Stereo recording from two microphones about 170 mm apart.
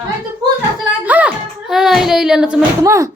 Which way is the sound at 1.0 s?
10° right (ahead or behind).